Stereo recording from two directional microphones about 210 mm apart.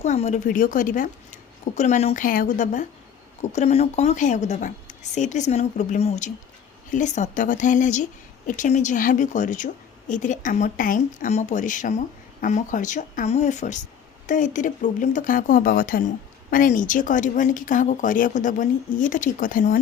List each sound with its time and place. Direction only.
0.0 s speech: 35° left (ahead or behind)